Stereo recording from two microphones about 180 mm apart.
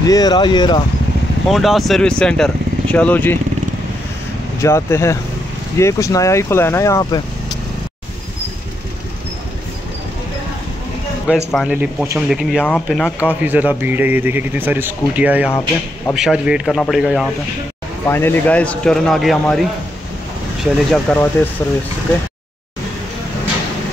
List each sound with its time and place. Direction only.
0.0 s speech: 20° left (ahead or behind)
1.5 s speech: centre (ahead or behind)
4.6 s speech: 15° left (ahead or behind)
11.2 s speech: 5° right (ahead or behind)
12.6 s speech: 5° left (ahead or behind)
13.4 s a man's voice: 10° right (ahead or behind)
18.0 s speech: 15° left (ahead or behind)
20.9 s speech: 5° left (ahead or behind)